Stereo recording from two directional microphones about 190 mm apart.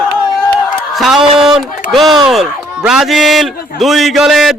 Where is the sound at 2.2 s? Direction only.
5° right (ahead or behind).